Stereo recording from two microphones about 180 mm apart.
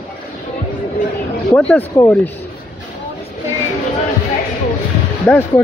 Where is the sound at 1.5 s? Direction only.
5° left (ahead or behind).